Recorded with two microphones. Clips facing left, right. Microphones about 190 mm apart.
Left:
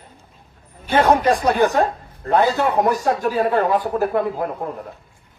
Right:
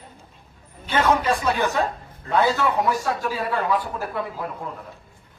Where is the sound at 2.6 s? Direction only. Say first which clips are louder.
Left 4 dB; 50° left (ahead or behind).